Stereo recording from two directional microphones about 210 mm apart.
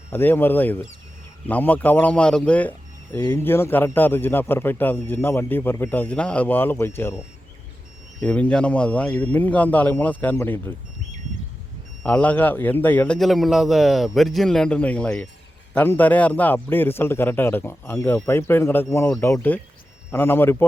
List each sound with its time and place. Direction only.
0.1 s speech: 10° left (ahead or behind)
8.2 s speech: 5° left (ahead or behind)
12.0 s a man's voice: 5° left (ahead or behind)